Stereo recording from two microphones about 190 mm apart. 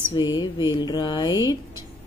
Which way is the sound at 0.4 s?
25° left (ahead or behind).